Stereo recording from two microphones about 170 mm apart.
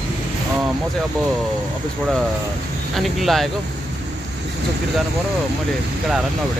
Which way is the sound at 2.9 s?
Centre (ahead or behind).